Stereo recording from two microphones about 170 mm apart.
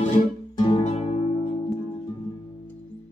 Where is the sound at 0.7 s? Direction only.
35° left (ahead or behind).